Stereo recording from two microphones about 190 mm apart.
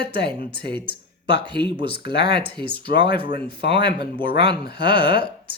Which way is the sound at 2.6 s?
55° left (ahead or behind).